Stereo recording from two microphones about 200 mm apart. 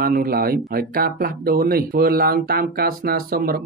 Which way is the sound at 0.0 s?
45° right (ahead or behind).